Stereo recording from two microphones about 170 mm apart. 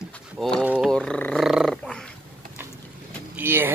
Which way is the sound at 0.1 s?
5° left (ahead or behind).